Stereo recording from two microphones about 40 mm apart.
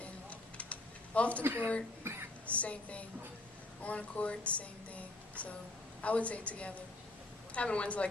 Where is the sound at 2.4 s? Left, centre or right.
Left.